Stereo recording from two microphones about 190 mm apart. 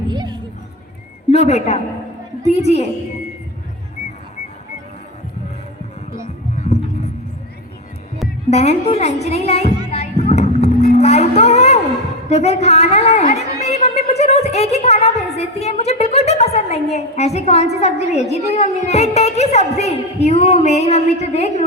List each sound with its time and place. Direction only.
0.1 s music: 25° right (ahead or behind)
1.3 s a woman's voice: 35° left (ahead or behind)
8.4 s a woman's voice: 35° left (ahead or behind)
9.9 s vehicle: 35° left (ahead or behind)
12.3 s a woman's voice: 35° left (ahead or behind)